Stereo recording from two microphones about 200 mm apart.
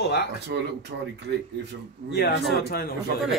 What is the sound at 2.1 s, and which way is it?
Speech, 55° left (ahead or behind).